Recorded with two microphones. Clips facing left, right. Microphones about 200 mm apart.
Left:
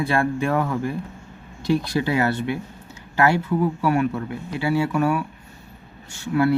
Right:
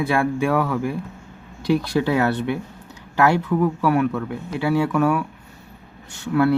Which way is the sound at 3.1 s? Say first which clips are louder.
Right 1 dB; 5° left (ahead or behind).